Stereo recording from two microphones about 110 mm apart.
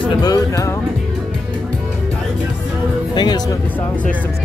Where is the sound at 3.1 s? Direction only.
40° left (ahead or behind).